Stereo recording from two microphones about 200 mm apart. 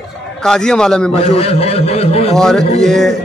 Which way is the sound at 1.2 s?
30° left (ahead or behind).